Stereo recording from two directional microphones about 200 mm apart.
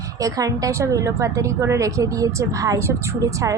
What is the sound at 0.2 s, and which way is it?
A woman's voice, 15° right (ahead or behind).